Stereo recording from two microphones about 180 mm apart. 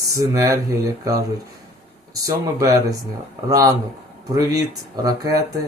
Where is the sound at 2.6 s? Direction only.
20° right (ahead or behind).